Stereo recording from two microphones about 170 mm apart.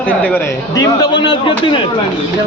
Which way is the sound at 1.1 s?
30° left (ahead or behind).